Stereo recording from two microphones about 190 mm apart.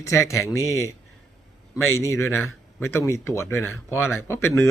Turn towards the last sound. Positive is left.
turn(degrees=15)  # may be behind; listen again after turning